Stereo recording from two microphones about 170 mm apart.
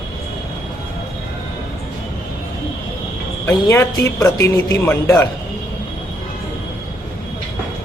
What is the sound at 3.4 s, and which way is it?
Speech, 15° left (ahead or behind).